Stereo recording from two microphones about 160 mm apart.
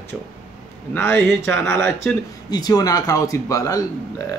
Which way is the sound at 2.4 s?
25° left (ahead or behind).